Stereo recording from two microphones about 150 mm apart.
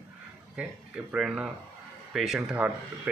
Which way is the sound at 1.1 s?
5° right (ahead or behind).